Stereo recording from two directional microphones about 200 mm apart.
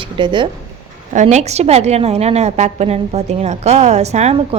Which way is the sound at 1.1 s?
35° right (ahead or behind).